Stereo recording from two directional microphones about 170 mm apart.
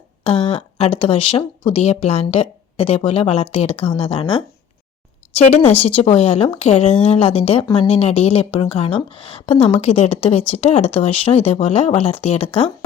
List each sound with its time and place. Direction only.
0.3 s speech: 35° left (ahead or behind)
5.3 s speech: 40° left (ahead or behind)